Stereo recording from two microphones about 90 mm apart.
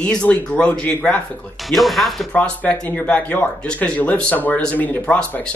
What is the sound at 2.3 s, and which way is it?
Speech, 15° left (ahead or behind).